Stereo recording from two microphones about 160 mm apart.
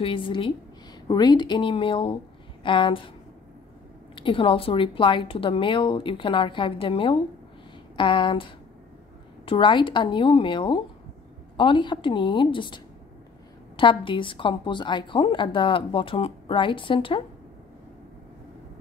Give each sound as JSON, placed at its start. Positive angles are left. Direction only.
{"t": 0.0, "sound": "a woman's voice", "side_deg": 30}
{"t": 4.1, "sound": "a woman's voice", "side_deg": 30}